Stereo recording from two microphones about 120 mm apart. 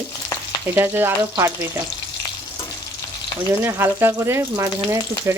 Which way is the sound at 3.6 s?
20° right (ahead or behind).